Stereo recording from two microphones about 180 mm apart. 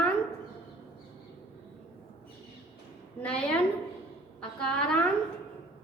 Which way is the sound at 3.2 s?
5° left (ahead or behind).